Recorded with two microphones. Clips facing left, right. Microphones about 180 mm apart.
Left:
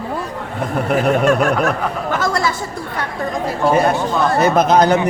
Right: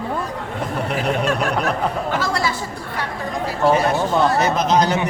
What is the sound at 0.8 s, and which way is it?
Snicker, 50° left (ahead or behind).